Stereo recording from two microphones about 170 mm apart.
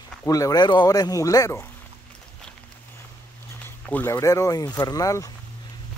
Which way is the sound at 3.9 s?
15° left (ahead or behind).